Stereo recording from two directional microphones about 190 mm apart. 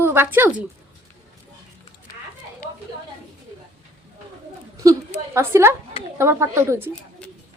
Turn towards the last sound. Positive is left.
turn(degrees=-15)  # may be behind; listen again after turning